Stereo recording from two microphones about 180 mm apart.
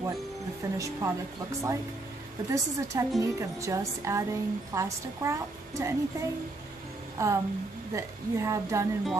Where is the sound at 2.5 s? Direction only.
15° right (ahead or behind).